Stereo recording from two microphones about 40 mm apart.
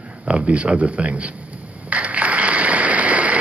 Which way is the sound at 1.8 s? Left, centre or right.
Right.